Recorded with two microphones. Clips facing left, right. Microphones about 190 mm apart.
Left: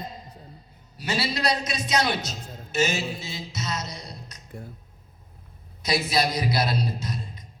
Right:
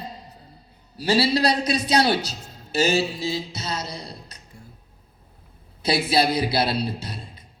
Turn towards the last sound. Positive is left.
turn(degrees=-30)  # may be behind; listen again after turning